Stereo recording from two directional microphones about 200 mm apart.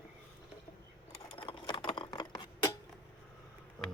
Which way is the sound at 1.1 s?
25° left (ahead or behind).